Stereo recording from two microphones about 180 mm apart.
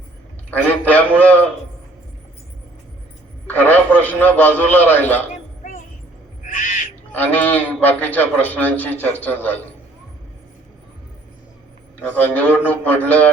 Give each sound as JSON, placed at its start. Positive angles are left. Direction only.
{"t": 0.5, "sound": "a man's voice", "side_deg": 10}
{"t": 3.4, "sound": "a man's voice", "side_deg": 10}
{"t": 6.4, "sound": "owl", "side_deg": 45}
{"t": 7.1, "sound": "a man's voice", "side_deg": 10}
{"t": 12.0, "sound": "a man's voice", "side_deg": 10}